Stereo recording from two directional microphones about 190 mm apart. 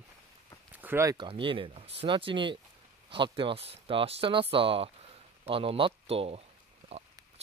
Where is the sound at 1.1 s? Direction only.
25° right (ahead or behind).